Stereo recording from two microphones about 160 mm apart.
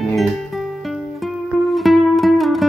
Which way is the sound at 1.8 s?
Centre (ahead or behind).